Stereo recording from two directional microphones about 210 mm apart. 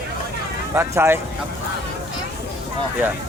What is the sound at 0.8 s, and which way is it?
Speech, 10° right (ahead or behind).